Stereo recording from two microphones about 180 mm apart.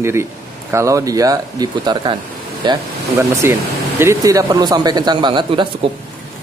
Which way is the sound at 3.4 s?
15° right (ahead or behind).